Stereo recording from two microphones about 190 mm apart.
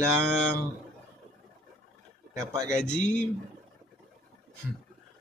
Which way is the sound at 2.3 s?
15° right (ahead or behind).